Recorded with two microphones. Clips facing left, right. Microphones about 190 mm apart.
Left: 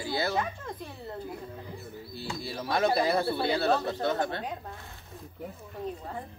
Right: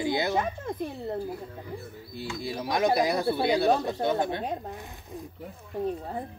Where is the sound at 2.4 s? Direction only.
15° right (ahead or behind).